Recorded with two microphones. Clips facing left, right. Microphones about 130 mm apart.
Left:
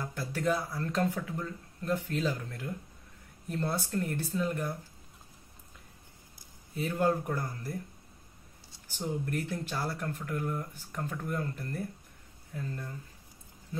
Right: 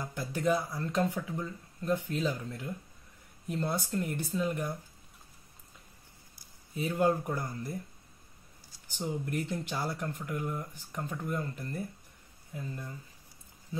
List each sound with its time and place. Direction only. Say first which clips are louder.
0.0 s a sound: even; 15° right (ahead or behind)
0.5 s speech: right 2 dB; 5° right (ahead or behind)
6.7 s speech: right 1 dB; 15° right (ahead or behind)
9.0 s speech: even; 10° right (ahead or behind)